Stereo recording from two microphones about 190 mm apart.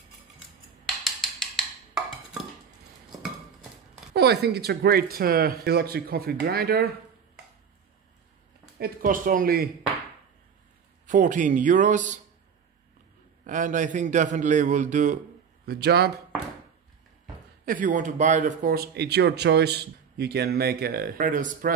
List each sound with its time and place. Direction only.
0.8 s wood block: centre (ahead or behind)
4.1 s speech: 60° right (ahead or behind)
8.7 s speech: 50° right (ahead or behind)
11.1 s a man's voice: 40° right (ahead or behind)
13.4 s a man's voice: 45° right (ahead or behind)
15.6 s a man's voice: 55° right (ahead or behind)
17.6 s speech: 45° right (ahead or behind)